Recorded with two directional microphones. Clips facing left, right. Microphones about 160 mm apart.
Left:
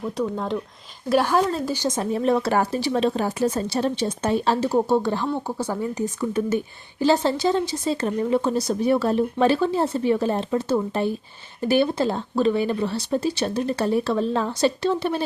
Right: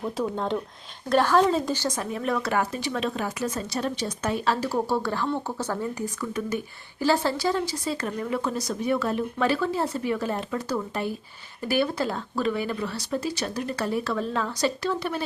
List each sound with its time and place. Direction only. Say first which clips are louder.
0.2 s speech: left 2 dB; centre (ahead or behind)
1.1 s speech: even; 10° left (ahead or behind)
1.7 s speech: left 3 dB; 15° left (ahead or behind)
2.0 s a woman's voice: left 6 dB; 30° left (ahead or behind)